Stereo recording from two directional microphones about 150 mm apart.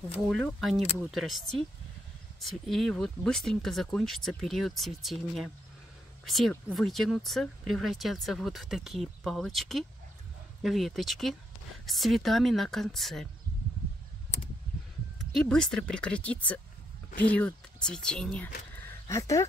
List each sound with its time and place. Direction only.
0.1 s speech: 5° left (ahead or behind)
15.3 s speech: 5° left (ahead or behind)
19.0 s speech: 20° left (ahead or behind)